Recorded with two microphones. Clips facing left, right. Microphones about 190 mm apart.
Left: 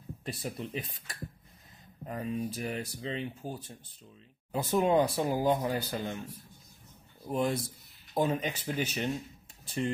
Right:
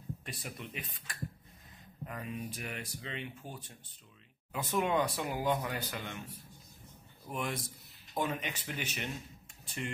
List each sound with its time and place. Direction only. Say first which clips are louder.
0.2 s speech: left 7 dB; 35° left (ahead or behind)
7.2 s speech: left 8 dB; 35° left (ahead or behind)